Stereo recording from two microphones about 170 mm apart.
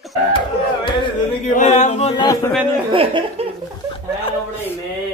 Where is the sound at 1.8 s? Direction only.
40° left (ahead or behind).